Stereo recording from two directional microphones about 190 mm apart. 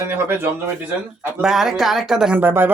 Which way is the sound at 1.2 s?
Centre (ahead or behind).